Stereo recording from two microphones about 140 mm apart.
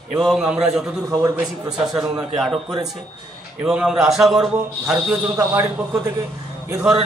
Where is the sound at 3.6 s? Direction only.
5° right (ahead or behind).